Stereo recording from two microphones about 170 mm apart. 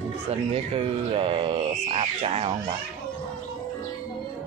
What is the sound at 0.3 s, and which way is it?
Speech, 35° right (ahead or behind).